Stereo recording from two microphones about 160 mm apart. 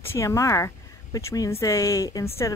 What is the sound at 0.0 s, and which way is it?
Speech, 15° left (ahead or behind).